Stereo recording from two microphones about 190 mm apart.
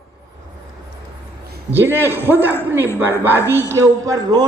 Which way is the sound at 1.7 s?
10° right (ahead or behind).